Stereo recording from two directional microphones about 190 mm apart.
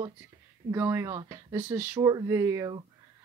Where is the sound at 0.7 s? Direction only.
15° right (ahead or behind).